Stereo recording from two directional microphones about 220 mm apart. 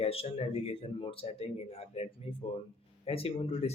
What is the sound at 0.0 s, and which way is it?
Speech, 25° left (ahead or behind).